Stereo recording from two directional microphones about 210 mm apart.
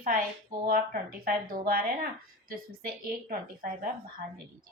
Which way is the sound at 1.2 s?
45° right (ahead or behind).